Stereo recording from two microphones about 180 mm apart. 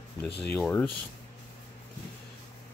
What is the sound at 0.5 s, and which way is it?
Speech, 5° left (ahead or behind).